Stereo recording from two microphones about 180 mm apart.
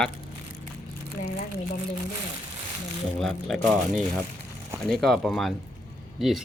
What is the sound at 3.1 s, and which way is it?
Speech, centre (ahead or behind).